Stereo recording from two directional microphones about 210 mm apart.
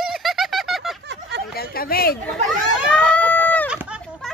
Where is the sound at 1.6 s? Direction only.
45° left (ahead or behind).